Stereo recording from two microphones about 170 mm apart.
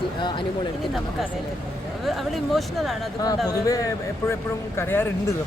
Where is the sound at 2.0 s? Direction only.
Centre (ahead or behind).